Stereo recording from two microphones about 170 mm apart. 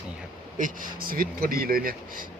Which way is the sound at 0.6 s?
55° right (ahead or behind).